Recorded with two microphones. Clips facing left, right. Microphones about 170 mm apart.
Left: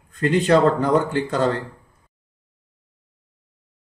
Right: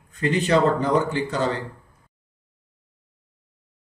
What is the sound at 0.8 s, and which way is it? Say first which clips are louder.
Speech: left 2 dB; 55° left (ahead or behind).